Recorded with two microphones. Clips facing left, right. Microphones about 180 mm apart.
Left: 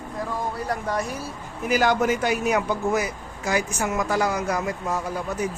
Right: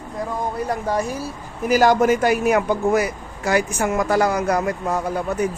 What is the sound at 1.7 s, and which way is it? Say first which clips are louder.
A man's voice: right 5 dB; 45° right (ahead or behind).